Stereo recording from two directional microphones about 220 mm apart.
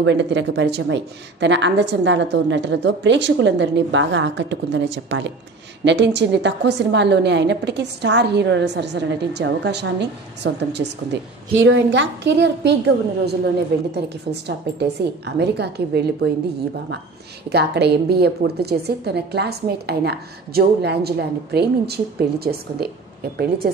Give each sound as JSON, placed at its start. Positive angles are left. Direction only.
{"t": 0.0, "sound": "a woman's voice", "side_deg": -55}
{"t": 17.5, "sound": "a woman's voice", "side_deg": -50}